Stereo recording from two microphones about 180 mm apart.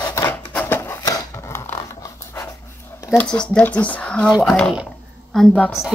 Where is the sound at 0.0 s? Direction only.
15° left (ahead or behind).